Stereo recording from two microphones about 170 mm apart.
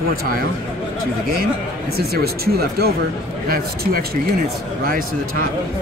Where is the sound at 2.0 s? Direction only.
65° right (ahead or behind).